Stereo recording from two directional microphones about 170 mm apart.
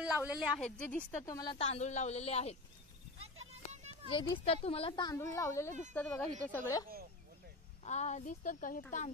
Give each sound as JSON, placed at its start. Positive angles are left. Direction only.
{"t": 0.0, "sound": "speech", "side_deg": -5}
{"t": 0.6, "sound": "speech", "side_deg": 5}
{"t": 1.6, "sound": "speech", "side_deg": 40}
{"t": 3.7, "sound": "a sound", "side_deg": -40}
{"t": 4.5, "sound": "speech", "side_deg": 35}
{"t": 6.5, "sound": "speech", "side_deg": 20}
{"t": 7.8, "sound": "a woman's voice", "side_deg": 40}